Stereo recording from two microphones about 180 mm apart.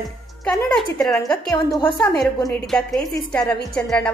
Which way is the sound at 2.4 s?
15° left (ahead or behind).